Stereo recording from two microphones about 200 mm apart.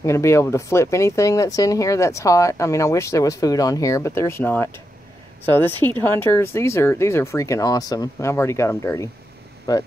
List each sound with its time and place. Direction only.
0.0 s speech: 15° left (ahead or behind)